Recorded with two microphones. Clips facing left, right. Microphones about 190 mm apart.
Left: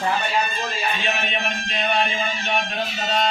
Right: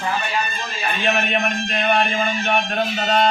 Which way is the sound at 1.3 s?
55° right (ahead or behind).